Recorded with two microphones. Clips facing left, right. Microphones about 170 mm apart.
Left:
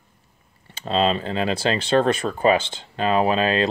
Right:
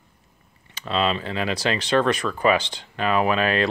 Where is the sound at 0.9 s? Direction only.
35° left (ahead or behind).